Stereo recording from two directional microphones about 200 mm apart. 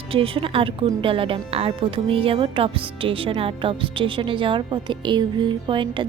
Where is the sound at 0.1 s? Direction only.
25° right (ahead or behind).